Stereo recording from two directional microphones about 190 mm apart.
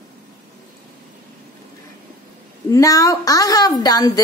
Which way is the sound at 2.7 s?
20° left (ahead or behind).